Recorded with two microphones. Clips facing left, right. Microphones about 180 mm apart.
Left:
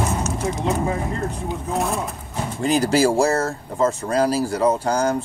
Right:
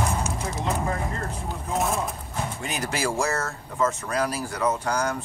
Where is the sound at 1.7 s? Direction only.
Centre (ahead or behind).